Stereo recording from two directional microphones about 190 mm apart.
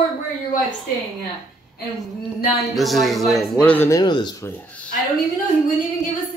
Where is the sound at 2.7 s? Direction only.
Centre (ahead or behind).